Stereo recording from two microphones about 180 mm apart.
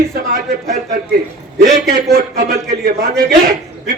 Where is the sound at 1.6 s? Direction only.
50° right (ahead or behind).